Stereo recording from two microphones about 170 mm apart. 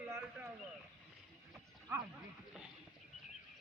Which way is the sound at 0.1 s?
15° right (ahead or behind).